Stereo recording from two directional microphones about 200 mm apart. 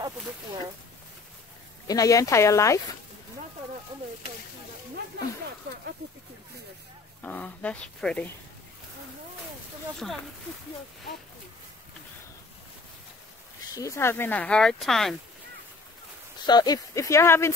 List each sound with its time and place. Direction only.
1.9 s speech: 15° left (ahead or behind)
7.2 s speech: 5° left (ahead or behind)
9.9 s speech: centre (ahead or behind)
13.7 s speech: 15° left (ahead or behind)
16.3 s speech: 20° left (ahead or behind)